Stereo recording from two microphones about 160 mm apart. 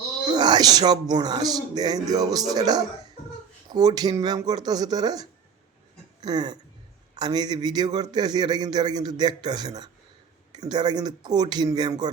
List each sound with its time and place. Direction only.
0.3 s a man's voice: 25° right (ahead or behind)